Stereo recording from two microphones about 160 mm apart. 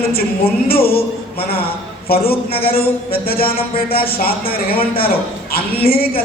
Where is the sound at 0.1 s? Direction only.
70° left (ahead or behind).